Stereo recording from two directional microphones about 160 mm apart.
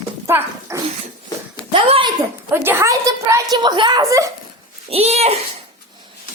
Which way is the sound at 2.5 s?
15° right (ahead or behind).